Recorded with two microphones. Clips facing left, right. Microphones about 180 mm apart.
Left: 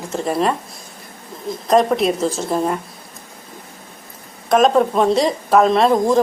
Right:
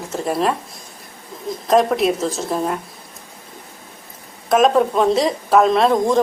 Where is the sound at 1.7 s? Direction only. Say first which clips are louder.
Even; centre (ahead or behind).